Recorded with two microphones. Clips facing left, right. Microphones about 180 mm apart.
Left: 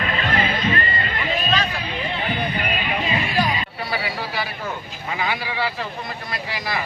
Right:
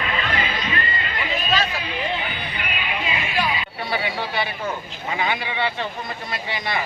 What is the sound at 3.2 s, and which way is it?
Music, 40° left (ahead or behind).